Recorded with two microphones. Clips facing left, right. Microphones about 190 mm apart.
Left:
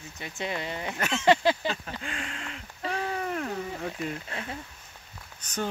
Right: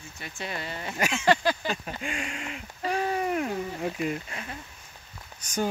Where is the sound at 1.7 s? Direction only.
10° right (ahead or behind).